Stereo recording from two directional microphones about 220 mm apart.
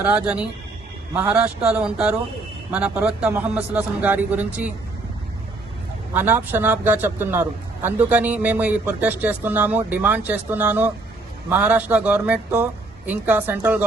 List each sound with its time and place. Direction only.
0.0 s a man's voice: 5° right (ahead or behind)
6.1 s speech: 10° right (ahead or behind)